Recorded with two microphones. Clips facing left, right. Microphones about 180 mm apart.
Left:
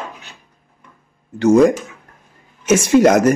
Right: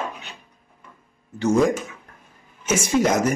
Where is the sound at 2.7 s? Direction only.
75° left (ahead or behind).